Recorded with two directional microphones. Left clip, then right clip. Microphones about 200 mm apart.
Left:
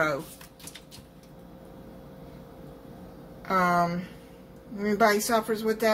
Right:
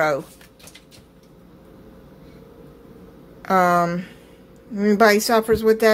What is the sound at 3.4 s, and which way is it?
Speech, 40° right (ahead or behind).